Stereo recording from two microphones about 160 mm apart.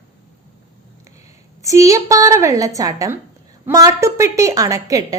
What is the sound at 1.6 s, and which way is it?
A woman's voice, 20° right (ahead or behind).